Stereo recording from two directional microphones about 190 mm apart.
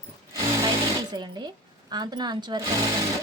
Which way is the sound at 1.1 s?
20° right (ahead or behind).